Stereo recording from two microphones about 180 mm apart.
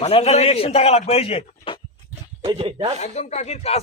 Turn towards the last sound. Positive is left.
turn(degrees=35)  # may be behind; listen again after turning